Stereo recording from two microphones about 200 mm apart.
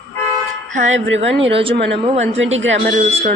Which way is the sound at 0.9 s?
70° right (ahead or behind).